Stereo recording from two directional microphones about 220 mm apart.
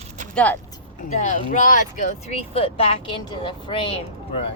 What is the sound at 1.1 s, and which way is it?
Speech, 35° left (ahead or behind).